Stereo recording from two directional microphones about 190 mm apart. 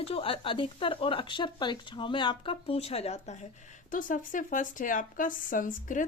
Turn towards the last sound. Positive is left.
turn(degrees=45)  # may be behind; listen again after turning